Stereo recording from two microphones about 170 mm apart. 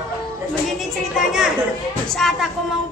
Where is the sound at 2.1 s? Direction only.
Centre (ahead or behind).